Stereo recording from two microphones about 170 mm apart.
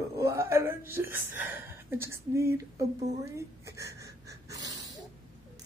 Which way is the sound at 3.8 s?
20° right (ahead or behind).